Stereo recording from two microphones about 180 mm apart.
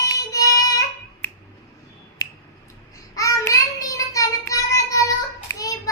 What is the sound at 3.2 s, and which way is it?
Child singing, 20° left (ahead or behind).